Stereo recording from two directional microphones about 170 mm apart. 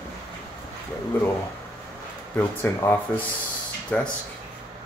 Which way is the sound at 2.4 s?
10° left (ahead or behind).